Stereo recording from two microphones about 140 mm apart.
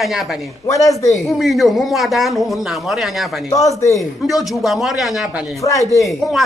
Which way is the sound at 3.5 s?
20° left (ahead or behind).